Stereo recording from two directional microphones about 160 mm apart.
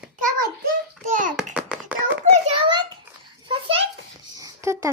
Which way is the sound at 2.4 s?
35° right (ahead or behind).